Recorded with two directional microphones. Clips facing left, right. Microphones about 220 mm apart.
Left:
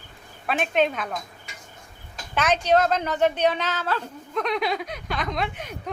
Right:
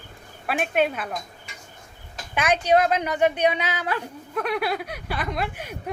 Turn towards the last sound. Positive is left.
turn(degrees=-10)  # may be behind; listen again after turning